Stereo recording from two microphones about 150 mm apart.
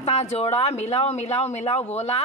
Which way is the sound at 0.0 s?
45° left (ahead or behind).